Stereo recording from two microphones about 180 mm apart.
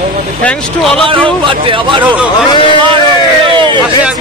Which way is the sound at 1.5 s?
30° right (ahead or behind).